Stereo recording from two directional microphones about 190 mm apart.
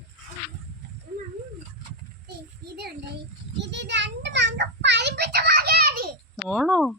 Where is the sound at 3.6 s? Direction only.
65° right (ahead or behind); by 6.2 s 50° right (ahead or behind).